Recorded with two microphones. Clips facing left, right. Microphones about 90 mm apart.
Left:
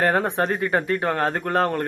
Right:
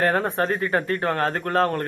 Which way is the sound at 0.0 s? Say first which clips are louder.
Left 1 dB; 10° left (ahead or behind).